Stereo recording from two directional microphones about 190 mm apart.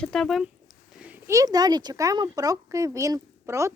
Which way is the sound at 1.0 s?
10° right (ahead or behind).